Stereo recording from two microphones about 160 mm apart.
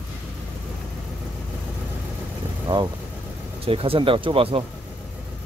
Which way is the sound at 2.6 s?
30° right (ahead or behind).